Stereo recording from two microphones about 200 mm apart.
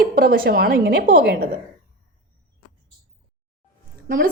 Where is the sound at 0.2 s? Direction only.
50° right (ahead or behind).